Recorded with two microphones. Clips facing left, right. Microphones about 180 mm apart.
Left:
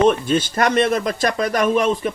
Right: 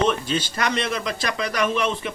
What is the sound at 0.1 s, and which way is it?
Speech, 50° left (ahead or behind).